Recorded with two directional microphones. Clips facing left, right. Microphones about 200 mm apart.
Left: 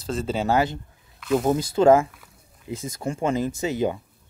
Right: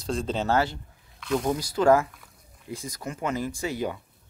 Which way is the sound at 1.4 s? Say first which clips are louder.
Left 4 dB; 25° left (ahead or behind).